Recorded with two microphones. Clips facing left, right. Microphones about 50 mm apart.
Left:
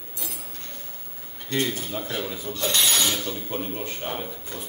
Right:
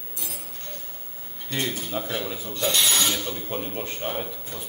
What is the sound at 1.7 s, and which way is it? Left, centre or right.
Speech, centre.